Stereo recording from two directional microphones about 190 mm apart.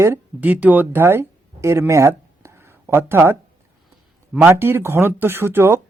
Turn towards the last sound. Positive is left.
turn(degrees=-10)  # may be behind; listen again after turning